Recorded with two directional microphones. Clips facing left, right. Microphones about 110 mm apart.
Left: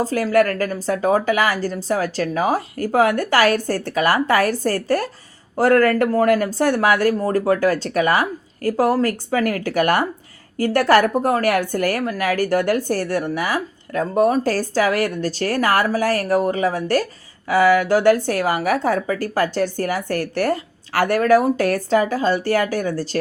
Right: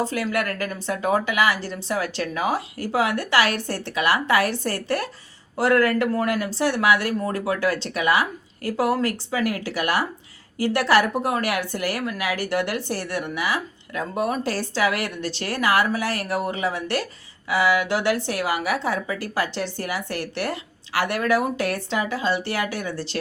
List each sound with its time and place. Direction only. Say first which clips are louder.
0.0 s a woman's voice: left 7 dB; 40° left (ahead or behind)